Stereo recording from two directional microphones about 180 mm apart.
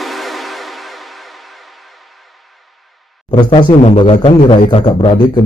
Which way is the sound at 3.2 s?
25° left (ahead or behind).